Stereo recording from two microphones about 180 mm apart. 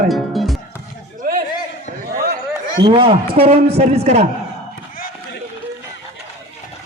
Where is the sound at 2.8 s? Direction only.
30° right (ahead or behind).